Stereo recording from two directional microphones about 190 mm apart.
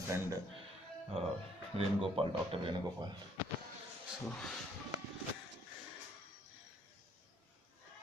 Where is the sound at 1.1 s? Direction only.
30° right (ahead or behind).